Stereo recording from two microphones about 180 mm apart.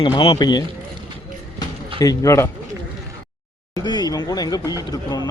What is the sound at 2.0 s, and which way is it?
Speech, 20° left (ahead or behind).